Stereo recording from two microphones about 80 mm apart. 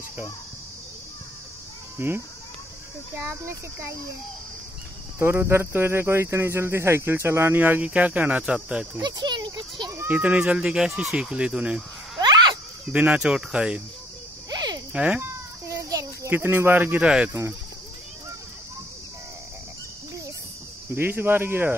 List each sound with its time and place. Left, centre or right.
2.0 s speech: right
5.2 s speech: right
7.8 s speech: centre
9.0 s speech: right
10.0 s speech: centre
12.2 s a sound: right
12.9 s speech: centre
14.5 s insect: right
14.9 s speech: centre
15.7 s a sound: right
16.3 s speech: right
20.9 s speech: right